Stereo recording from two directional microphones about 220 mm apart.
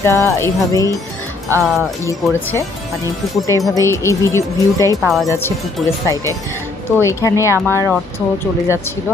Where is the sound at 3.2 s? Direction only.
Centre (ahead or behind).